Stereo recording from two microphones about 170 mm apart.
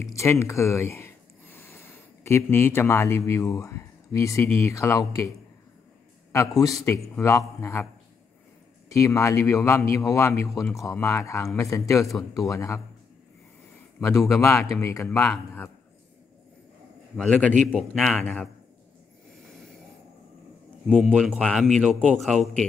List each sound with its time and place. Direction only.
0.0 s a sound: 15° left (ahead or behind)
2.2 s speech: 15° left (ahead or behind)
6.8 s speech: 15° left (ahead or behind)
8.9 s speech: 20° left (ahead or behind)
14.3 s speech: 15° left (ahead or behind)
15.0 s speech: 5° left (ahead or behind)
17.2 s speech: 10° left (ahead or behind)
20.8 s a man's voice: centre (ahead or behind)